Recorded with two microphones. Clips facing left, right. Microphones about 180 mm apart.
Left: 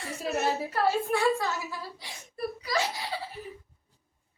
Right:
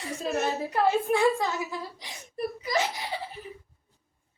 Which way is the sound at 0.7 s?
20° right (ahead or behind).